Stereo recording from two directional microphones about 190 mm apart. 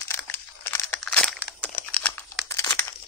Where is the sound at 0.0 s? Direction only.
10° left (ahead or behind).